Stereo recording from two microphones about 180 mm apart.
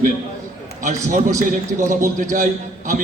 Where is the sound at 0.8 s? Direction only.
45° right (ahead or behind).